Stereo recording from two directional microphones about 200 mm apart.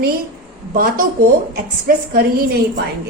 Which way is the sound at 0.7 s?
45° right (ahead or behind).